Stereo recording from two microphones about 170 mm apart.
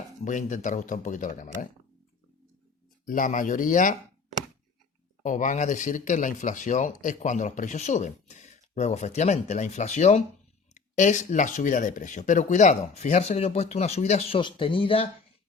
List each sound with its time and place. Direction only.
0.3 s speech: 45° left (ahead or behind)
3.1 s speech: 50° left (ahead or behind)
5.2 s speech: 50° left (ahead or behind); by 15.0 s 30° left (ahead or behind)